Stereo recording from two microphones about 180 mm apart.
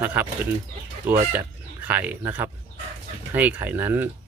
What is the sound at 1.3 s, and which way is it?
Speech, 10° right (ahead or behind).